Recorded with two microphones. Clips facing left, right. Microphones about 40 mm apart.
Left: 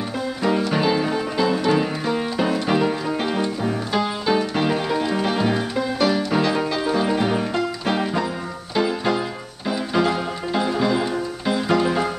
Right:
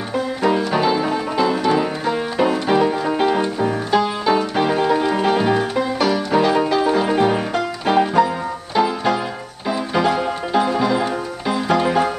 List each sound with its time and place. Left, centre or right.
0.4 s music: centre
6.3 s music: centre
11.7 s music: right